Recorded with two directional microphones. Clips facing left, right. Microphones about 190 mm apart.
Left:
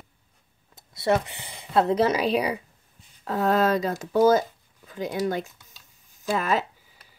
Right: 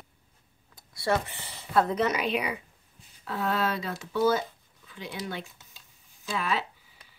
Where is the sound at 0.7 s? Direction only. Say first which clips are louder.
Left 4 dB; 20° left (ahead or behind).